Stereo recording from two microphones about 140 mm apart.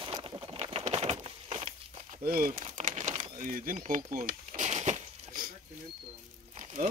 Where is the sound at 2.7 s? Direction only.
65° right (ahead or behind).